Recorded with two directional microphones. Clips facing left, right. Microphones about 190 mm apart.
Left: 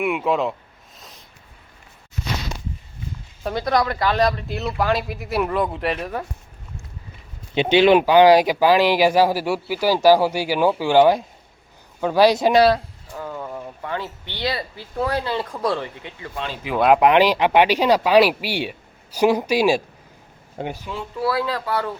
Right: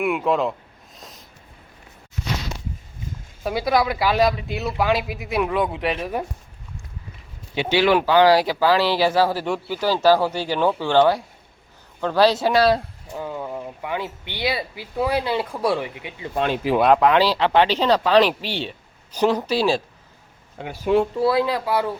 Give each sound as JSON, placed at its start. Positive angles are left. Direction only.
{"t": 0.0, "sound": "speech", "side_deg": 0}
{"t": 0.9, "sound": "a sound", "side_deg": 0}
{"t": 3.4, "sound": "speech", "side_deg": -5}
{"t": 7.5, "sound": "speech", "side_deg": 20}
{"t": 12.7, "sound": "speech", "side_deg": -15}
{"t": 16.3, "sound": "speech", "side_deg": -55}
{"t": 17.0, "sound": "speech", "side_deg": 15}
{"t": 20.8, "sound": "speech", "side_deg": -50}
{"t": 21.2, "sound": "speech", "side_deg": -20}